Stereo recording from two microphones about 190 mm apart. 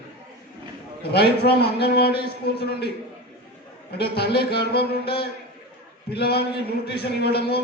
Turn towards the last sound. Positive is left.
turn(degrees=55)  # may be behind; listen again after turning